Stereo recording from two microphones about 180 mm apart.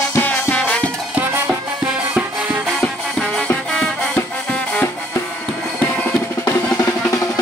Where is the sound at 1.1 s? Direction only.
10° right (ahead or behind).